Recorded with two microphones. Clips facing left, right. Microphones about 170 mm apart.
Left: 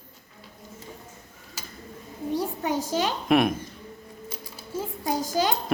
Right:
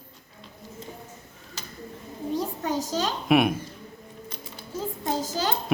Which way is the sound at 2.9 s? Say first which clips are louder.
Left 2 dB; 10° left (ahead or behind).